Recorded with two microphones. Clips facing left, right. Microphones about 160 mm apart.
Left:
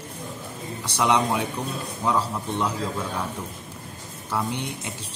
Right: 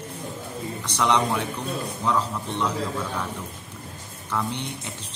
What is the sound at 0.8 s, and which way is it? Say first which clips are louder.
A man's voice: left 1 dB; 10° left (ahead or behind).